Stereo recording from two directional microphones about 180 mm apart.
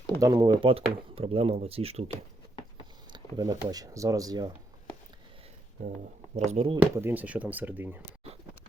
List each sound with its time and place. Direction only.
0.2 s speech: 20° right (ahead or behind)
3.1 s speech: 20° right (ahead or behind)
6.3 s speech: 35° right (ahead or behind)
6.9 s speech: 10° right (ahead or behind)